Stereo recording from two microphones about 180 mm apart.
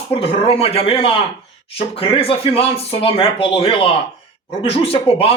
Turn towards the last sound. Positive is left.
turn(degrees=30)  # may be behind; listen again after turning